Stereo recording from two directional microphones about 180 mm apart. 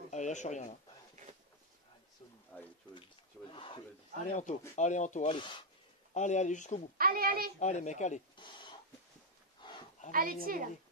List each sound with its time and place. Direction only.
0.1 s speech: 40° left (ahead or behind)
2.5 s speech: 5° left (ahead or behind)
3.5 s speech: 30° left (ahead or behind)
4.4 s speech: 40° left (ahead or behind)
5.3 s speech: 25° left (ahead or behind)
6.1 s speech: 40° left (ahead or behind)
7.0 s a child's voice: 55° right (ahead or behind)
7.6 s speech: 40° left (ahead or behind)
8.4 s a sound: 25° left (ahead or behind)
10.1 s a woman's voice: 55° right (ahead or behind)